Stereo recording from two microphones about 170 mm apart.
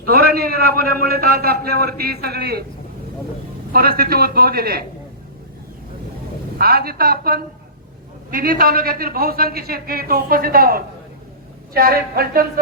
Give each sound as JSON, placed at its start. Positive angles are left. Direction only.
{"t": 0.0, "sound": "a man's voice", "side_deg": -65}
{"t": 3.7, "sound": "a man's voice", "side_deg": -60}
{"t": 6.6, "sound": "a man's voice", "side_deg": -65}